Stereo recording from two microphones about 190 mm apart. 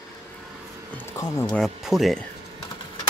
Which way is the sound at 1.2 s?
15° left (ahead or behind).